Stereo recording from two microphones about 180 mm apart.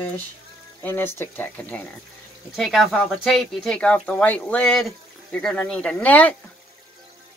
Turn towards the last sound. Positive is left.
turn(degrees=10)  # may be behind; listen again after turning